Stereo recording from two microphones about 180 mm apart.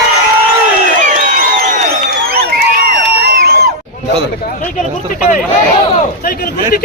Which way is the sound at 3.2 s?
60° right (ahead or behind).